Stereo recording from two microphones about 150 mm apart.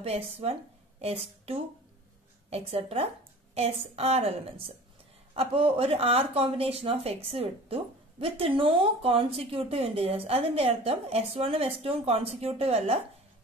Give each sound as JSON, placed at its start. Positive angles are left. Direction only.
{"t": 0.0, "sound": "a woman's voice", "side_deg": -40}